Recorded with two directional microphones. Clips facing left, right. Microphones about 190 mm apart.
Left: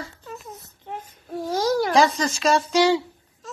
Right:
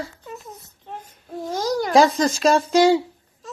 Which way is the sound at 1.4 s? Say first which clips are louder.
Left 2 dB; centre (ahead or behind).